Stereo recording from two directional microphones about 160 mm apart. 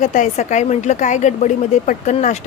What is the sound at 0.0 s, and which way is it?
A woman's voice, 50° left (ahead or behind).